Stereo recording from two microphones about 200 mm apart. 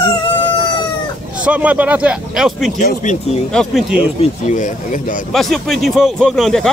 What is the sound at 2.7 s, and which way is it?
Speech, 40° left (ahead or behind).